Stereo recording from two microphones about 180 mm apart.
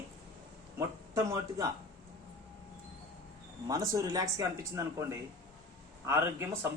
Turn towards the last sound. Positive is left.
turn(degrees=-15)  # may be behind; listen again after turning